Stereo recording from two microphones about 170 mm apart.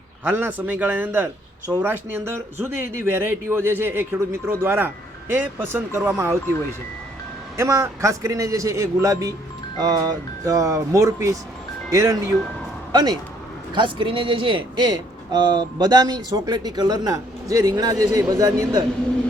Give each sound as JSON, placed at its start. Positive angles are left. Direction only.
{"t": 0.3, "sound": "speech", "side_deg": -10}
{"t": 7.6, "sound": "speech", "side_deg": -15}